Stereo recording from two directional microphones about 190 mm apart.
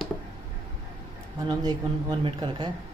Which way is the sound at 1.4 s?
25° right (ahead or behind).